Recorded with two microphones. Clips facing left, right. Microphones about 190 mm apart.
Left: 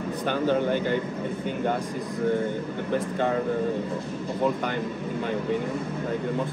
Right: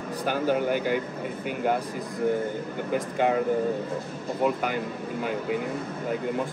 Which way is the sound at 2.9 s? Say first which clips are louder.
Right 1 dB; 10° right (ahead or behind).